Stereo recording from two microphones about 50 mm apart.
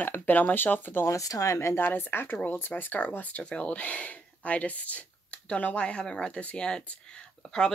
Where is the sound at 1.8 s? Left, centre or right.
Left.